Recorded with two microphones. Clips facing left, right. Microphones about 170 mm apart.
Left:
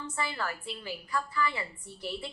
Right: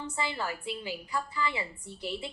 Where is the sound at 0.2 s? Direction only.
15° right (ahead or behind).